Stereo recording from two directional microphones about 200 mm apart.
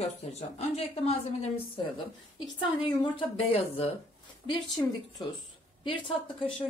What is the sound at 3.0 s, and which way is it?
Speech, 25° left (ahead or behind).